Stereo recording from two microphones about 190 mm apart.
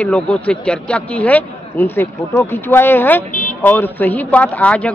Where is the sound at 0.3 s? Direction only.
5° left (ahead or behind).